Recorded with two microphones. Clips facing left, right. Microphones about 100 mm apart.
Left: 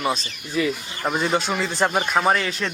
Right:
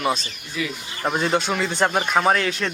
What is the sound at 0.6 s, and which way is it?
Speech, 35° left (ahead or behind).